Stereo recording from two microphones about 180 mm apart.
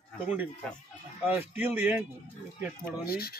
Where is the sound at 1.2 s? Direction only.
10° right (ahead or behind).